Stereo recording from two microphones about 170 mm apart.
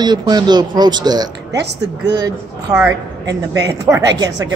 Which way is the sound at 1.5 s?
85° right.